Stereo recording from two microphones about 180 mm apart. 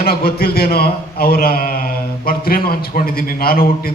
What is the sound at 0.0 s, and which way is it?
A man's voice, 55° left (ahead or behind).